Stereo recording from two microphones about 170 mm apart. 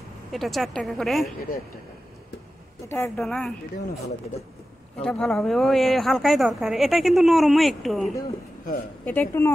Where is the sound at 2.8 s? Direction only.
15° left (ahead or behind).